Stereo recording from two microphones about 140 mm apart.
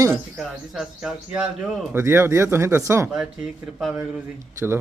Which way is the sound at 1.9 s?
20° right (ahead or behind).